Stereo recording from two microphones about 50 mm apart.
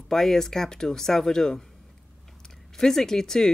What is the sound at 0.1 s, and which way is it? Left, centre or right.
Speech, centre.